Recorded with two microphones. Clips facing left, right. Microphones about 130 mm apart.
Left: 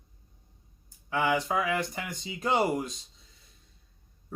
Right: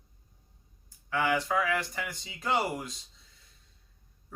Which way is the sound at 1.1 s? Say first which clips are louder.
Left 1 dB; 20° left (ahead or behind).